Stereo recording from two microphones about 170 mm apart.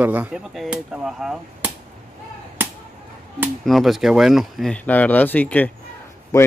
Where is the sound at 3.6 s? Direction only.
Centre (ahead or behind).